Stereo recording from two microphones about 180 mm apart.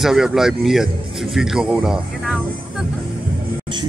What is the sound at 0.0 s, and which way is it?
Speech, centre (ahead or behind).